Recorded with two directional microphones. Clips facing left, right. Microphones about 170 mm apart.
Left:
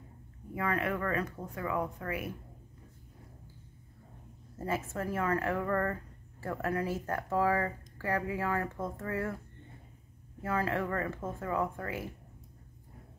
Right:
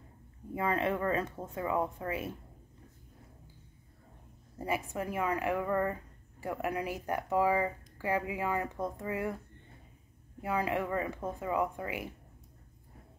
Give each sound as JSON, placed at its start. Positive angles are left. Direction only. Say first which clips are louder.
{"t": 0.6, "sound": "speech", "louder": "right 2 dB", "side_deg": -25}
{"t": 4.6, "sound": "speech", "louder": "even", "side_deg": -15}
{"t": 10.4, "sound": "speech", "louder": "even", "side_deg": -15}